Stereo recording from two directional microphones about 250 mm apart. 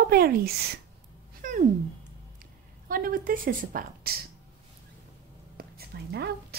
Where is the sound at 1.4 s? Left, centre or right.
Right.